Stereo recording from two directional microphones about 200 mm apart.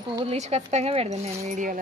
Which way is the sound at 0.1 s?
30° right (ahead or behind).